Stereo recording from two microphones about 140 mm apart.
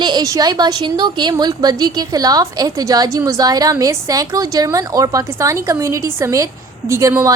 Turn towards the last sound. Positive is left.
turn(degrees=-15)  # may be behind; listen again after turning